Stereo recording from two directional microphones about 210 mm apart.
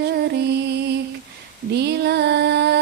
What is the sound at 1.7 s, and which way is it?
Music, 50° right (ahead or behind).